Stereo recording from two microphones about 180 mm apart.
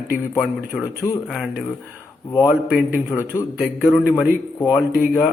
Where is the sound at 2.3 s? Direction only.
25° left (ahead or behind).